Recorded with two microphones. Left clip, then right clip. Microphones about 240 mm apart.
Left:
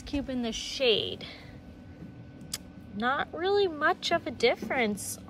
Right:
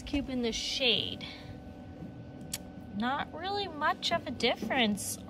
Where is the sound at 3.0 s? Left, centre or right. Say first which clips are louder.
Left 5 dB; centre.